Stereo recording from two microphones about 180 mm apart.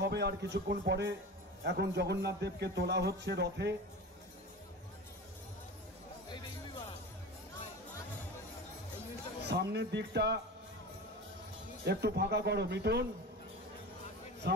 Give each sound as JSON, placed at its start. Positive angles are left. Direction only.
{"t": 0.0, "sound": "speech", "side_deg": -70}
{"t": 9.5, "sound": "speech", "side_deg": -70}
{"t": 11.8, "sound": "speech", "side_deg": -65}